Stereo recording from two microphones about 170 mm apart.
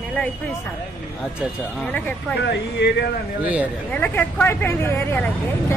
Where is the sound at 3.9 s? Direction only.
10° left (ahead or behind).